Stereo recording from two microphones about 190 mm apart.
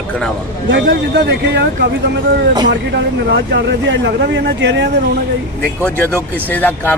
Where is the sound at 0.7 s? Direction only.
70° right (ahead or behind).